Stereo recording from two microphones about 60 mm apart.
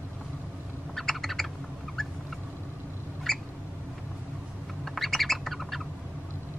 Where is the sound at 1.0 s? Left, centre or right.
Centre.